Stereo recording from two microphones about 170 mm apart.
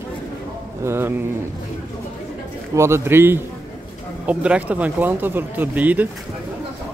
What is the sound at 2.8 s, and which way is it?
Speech, 15° right (ahead or behind).